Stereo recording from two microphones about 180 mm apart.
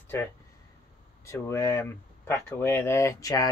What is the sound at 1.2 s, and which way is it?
Speech, 15° left (ahead or behind).